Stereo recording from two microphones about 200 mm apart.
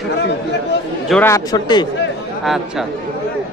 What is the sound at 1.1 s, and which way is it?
Speech, 15° left (ahead or behind).